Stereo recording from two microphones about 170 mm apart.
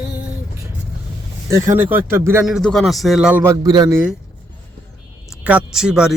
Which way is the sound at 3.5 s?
25° right (ahead or behind).